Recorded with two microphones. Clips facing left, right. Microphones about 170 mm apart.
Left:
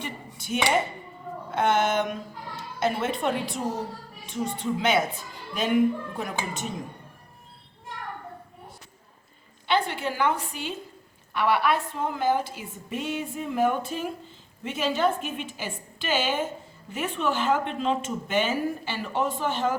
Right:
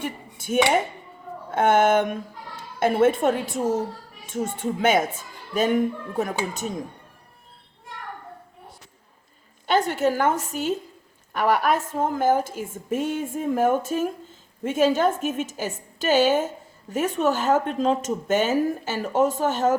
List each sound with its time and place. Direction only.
0.0 s speech: 50° right (ahead or behind)
9.6 s speech: 45° right (ahead or behind)